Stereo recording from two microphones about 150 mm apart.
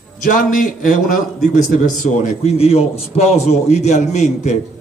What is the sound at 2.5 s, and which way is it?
A man's voice, 40° left (ahead or behind).